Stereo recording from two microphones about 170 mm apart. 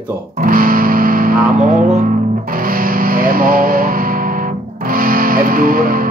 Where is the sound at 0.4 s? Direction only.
55° right (ahead or behind).